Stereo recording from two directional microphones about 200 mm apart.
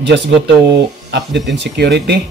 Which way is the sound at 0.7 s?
60° right (ahead or behind).